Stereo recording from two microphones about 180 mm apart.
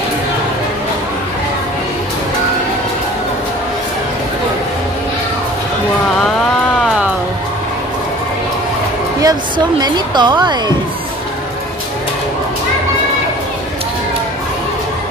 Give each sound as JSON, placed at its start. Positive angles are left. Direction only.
{"t": 6.8, "sound": "music", "side_deg": 0}
{"t": 9.2, "sound": "a woman's voice", "side_deg": -20}